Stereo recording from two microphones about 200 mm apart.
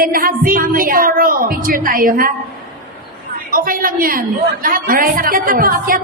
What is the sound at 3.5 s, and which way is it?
A woman's voice, 45° right (ahead or behind).